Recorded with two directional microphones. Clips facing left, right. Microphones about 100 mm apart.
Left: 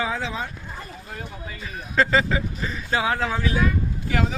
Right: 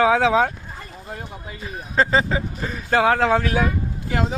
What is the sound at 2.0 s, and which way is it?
Speech, 35° right (ahead or behind).